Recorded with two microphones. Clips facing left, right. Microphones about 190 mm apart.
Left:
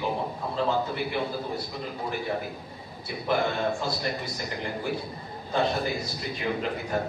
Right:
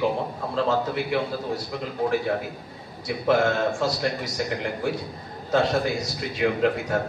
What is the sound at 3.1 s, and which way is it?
A man's voice, 90° right.